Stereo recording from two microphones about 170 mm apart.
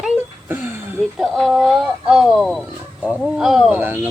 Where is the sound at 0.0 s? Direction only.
10° right (ahead or behind).